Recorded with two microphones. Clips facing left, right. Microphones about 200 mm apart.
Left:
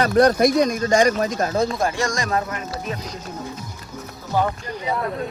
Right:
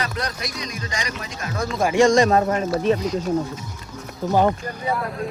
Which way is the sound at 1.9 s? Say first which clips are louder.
Right 8 dB; 30° right (ahead or behind).